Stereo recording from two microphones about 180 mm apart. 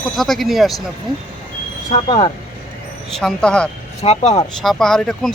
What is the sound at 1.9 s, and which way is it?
Speech, 30° left (ahead or behind).